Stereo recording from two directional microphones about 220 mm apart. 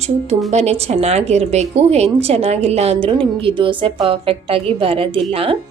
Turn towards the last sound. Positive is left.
turn(degrees=-25)  # may be behind; listen again after turning